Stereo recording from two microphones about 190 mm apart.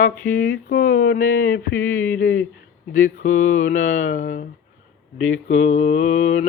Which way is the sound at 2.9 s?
45° left (ahead or behind).